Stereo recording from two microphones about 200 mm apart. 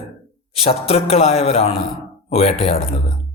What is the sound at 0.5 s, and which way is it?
Speech, 30° left (ahead or behind).